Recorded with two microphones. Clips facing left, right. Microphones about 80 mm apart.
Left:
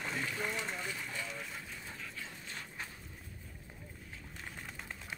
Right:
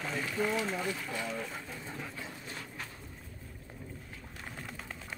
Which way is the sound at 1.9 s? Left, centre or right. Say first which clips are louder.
Right 5 dB; right.